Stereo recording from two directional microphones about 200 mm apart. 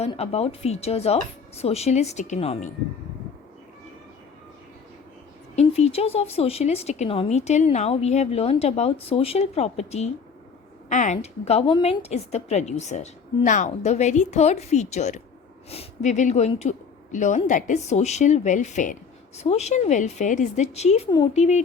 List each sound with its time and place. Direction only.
0.0 s a woman's voice: 30° left (ahead or behind)
5.5 s a woman's voice: 30° left (ahead or behind)